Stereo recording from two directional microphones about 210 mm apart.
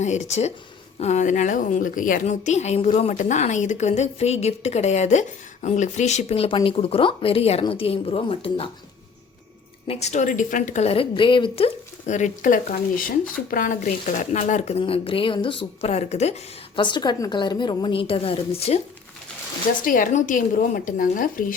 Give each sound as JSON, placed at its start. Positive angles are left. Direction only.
{"t": 0.0, "sound": "a woman's voice", "side_deg": 35}
{"t": 9.8, "sound": "speech", "side_deg": 30}
{"t": 19.8, "sound": "a woman's voice", "side_deg": 40}